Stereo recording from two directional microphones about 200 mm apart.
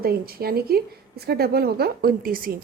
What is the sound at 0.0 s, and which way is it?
Speech, 50° right (ahead or behind).